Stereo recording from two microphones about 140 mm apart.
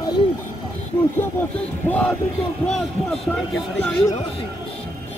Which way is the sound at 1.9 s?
10° left (ahead or behind).